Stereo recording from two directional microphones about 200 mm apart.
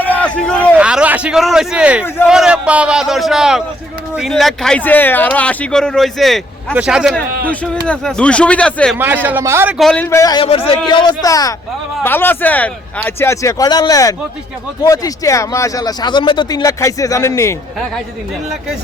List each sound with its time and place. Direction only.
0.0 s a sound: 10° left (ahead or behind)
0.7 s speech: 5° right (ahead or behind)
9.0 s a man's voice: 10° right (ahead or behind)
9.7 s a man's voice: 5° left (ahead or behind)